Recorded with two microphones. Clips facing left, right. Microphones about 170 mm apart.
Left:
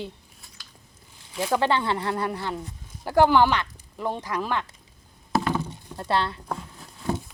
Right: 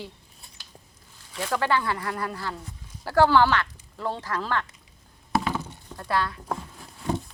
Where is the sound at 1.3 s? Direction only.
15° left (ahead or behind).